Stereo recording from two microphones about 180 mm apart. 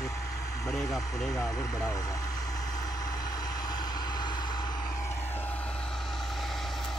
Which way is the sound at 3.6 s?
20° left (ahead or behind).